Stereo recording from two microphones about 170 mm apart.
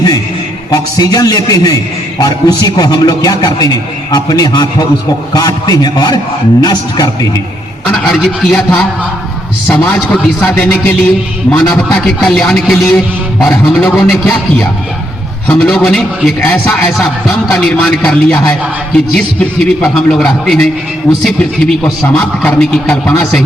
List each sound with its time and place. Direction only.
0.7 s a man's voice: 20° left (ahead or behind)
7.9 s a man's voice: 5° left (ahead or behind)